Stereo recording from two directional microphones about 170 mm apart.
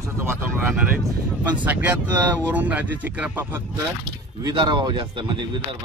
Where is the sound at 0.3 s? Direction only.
10° right (ahead or behind).